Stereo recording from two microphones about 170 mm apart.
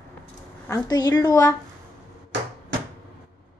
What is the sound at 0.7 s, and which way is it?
Speech, 25° left (ahead or behind).